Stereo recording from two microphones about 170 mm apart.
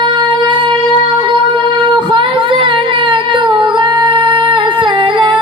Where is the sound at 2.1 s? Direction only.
30° right (ahead or behind).